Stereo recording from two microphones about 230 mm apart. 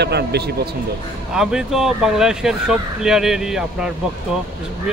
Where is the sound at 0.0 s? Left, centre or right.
Right.